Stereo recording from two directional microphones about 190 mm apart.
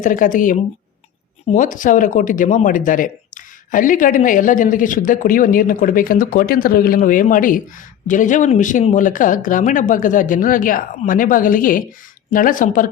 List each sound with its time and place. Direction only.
0.0 s speech: 45° left (ahead or behind)